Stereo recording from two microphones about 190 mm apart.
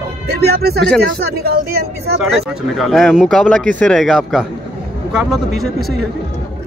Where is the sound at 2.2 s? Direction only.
Centre (ahead or behind).